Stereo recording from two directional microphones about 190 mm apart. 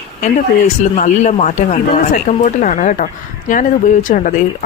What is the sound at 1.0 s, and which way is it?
Speech, 40° left (ahead or behind).